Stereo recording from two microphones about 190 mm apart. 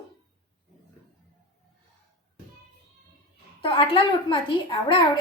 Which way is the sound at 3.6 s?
25° left (ahead or behind).